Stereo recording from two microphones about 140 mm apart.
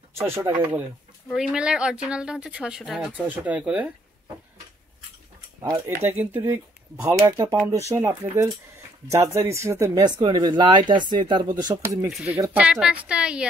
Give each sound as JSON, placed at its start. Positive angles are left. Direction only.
{"t": 0.1, "sound": "speech", "side_deg": -20}
{"t": 1.3, "sound": "speech", "side_deg": -5}
{"t": 5.6, "sound": "speech", "side_deg": -20}
{"t": 12.1, "sound": "speech", "side_deg": 0}